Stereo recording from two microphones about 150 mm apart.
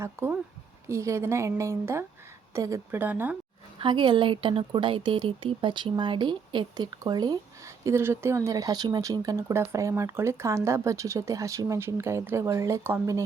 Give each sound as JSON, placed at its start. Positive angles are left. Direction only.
{"t": 0.0, "sound": "speech", "side_deg": -15}
{"t": 3.8, "sound": "speech", "side_deg": -35}